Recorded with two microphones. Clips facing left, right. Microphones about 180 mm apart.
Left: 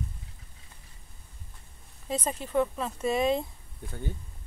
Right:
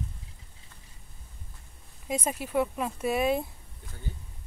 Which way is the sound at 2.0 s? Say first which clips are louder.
Right 1 dB; 10° right (ahead or behind).